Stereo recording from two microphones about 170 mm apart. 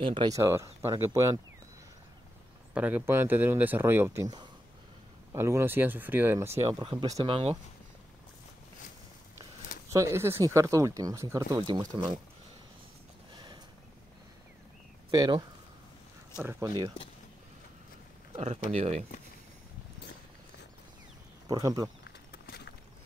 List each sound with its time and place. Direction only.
0.0 s speech: 30° right (ahead or behind)
0.4 s speech: 15° right (ahead or behind)
2.7 s speech: 10° right (ahead or behind)
6.6 s speech: 30° right (ahead or behind)
7.2 s speech: 35° right (ahead or behind)
9.9 s speech: 15° right (ahead or behind)
13.3 s a sound: 25° right (ahead or behind)
15.0 s speech: 25° right (ahead or behind)
16.3 s speech: 15° right (ahead or behind)
18.3 s speech: 40° right (ahead or behind)
21.5 s speech: 20° right (ahead or behind)
22.0 s a sound: 70° left (ahead or behind)